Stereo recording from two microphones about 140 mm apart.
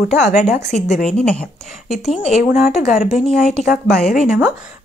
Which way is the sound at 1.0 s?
5° left (ahead or behind).